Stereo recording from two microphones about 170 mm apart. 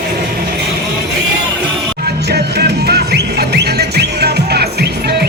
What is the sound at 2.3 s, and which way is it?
Music, 75° right (ahead or behind).